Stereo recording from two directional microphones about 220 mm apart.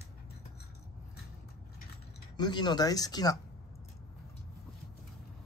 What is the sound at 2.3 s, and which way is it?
Speech, 20° left (ahead or behind).